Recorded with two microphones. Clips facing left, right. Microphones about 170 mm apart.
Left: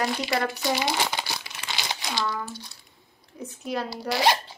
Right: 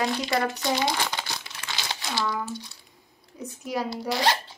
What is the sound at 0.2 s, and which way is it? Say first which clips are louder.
Crumpling: right 1 dB; 10° left (ahead or behind).